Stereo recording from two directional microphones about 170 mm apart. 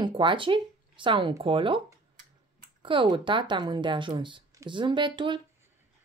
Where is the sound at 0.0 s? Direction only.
30° right (ahead or behind).